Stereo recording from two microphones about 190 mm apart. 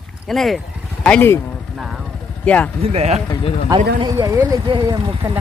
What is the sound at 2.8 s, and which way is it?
Speech, 35° right (ahead or behind).